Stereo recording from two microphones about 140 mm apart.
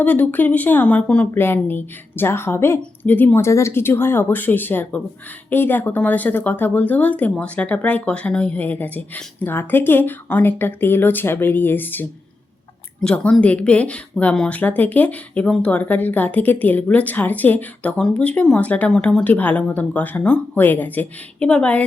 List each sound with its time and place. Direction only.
0.0 s speech: 10° left (ahead or behind)